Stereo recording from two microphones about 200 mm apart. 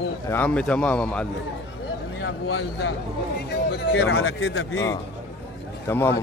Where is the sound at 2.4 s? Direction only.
70° left (ahead or behind).